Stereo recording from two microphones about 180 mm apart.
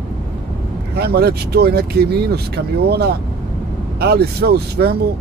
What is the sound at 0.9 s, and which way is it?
Speech, 65° right (ahead or behind).